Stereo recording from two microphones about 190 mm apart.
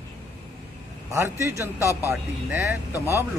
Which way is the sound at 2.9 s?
15° left (ahead or behind).